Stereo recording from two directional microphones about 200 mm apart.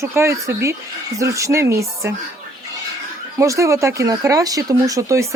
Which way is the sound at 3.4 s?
15° right (ahead or behind).